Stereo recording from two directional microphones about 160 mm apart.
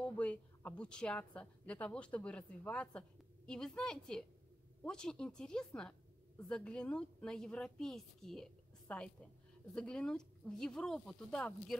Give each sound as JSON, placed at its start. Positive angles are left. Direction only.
{"t": 0.0, "sound": "a woman's voice", "side_deg": 10}